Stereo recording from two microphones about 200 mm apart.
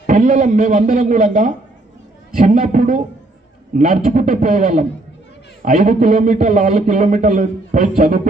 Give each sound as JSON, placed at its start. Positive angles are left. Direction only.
{"t": 0.1, "sound": "a man's voice", "side_deg": -40}